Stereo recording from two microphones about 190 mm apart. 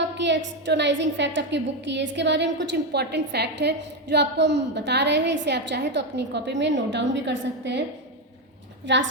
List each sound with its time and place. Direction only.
0.2 s a woman's voice: 65° right (ahead or behind)
8.9 s a woman's voice: 70° right (ahead or behind)